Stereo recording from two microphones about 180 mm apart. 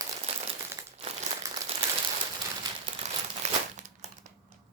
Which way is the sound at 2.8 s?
40° right (ahead or behind).